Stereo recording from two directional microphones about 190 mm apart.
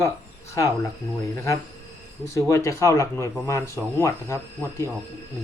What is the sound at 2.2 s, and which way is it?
Speech, 15° left (ahead or behind).